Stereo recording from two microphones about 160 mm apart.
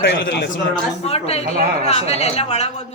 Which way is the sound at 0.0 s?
90° left.